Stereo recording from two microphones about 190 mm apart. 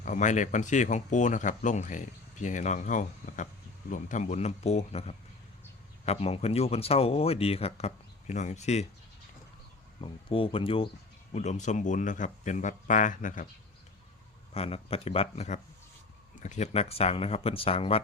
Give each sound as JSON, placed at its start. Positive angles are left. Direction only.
{"t": 0.0, "sound": "speech", "side_deg": 40}
{"t": 10.0, "sound": "speech", "side_deg": 30}
{"t": 14.5, "sound": "speech", "side_deg": 30}